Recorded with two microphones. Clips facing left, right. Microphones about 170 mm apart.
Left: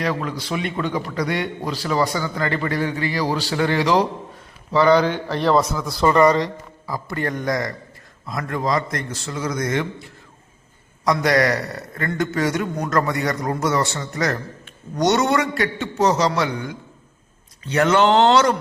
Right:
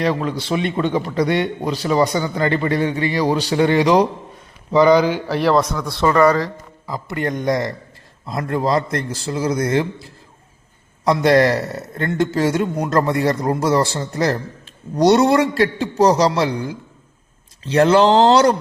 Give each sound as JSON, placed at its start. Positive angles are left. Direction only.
{"t": 0.0, "sound": "a man's voice", "side_deg": -25}
{"t": 6.8, "sound": "a man's voice", "side_deg": -20}